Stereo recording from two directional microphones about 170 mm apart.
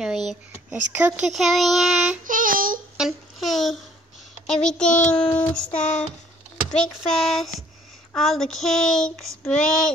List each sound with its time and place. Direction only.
0.0 s speech: 5° right (ahead or behind)
2.2 s child singing: 55° right (ahead or behind)
3.0 s a child's voice: centre (ahead or behind)
5.1 s child singing: 5° left (ahead or behind)
6.7 s speech: centre (ahead or behind)